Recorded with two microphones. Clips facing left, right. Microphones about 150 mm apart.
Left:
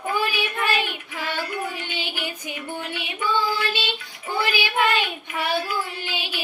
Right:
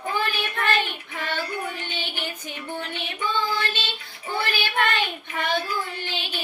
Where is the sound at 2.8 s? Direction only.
10° left (ahead or behind).